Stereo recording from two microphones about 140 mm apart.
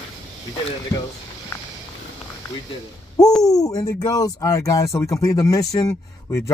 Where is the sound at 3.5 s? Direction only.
25° left (ahead or behind).